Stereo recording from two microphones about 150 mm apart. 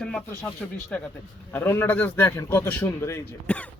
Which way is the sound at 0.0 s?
5° left (ahead or behind).